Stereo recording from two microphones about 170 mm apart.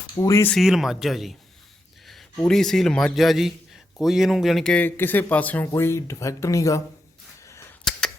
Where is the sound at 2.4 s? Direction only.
5° left (ahead or behind); by 6.8 s 20° left (ahead or behind).